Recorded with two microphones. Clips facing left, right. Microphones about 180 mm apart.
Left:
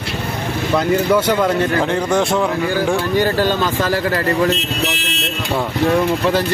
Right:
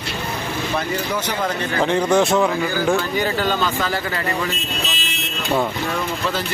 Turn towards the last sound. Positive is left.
turn(degrees=70)  # may be behind; listen again after turning